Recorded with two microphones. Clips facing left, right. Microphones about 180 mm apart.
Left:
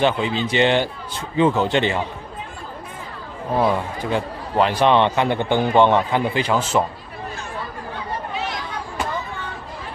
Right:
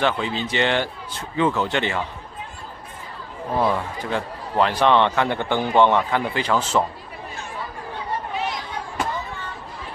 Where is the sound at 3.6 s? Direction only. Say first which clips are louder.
Left 2 dB; 15° left (ahead or behind).